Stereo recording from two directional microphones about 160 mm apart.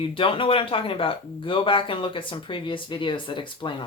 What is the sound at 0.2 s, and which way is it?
Speech, 35° left (ahead or behind).